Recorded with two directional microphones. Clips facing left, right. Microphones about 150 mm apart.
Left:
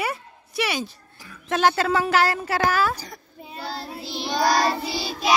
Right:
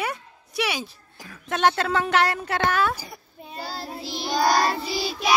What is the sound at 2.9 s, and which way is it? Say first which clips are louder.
Child singing: left 1 dB; 5° right (ahead or behind).